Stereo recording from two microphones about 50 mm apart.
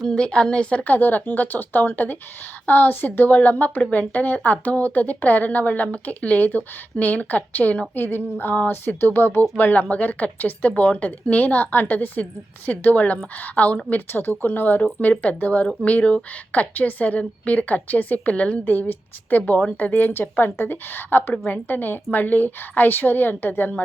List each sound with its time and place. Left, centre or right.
0.1 s speech: centre
0.9 s a woman's voice: left
7.9 s speech: left
9.6 s a woman's voice: left
14.1 s a woman's voice: left
18.6 s a woman's voice: left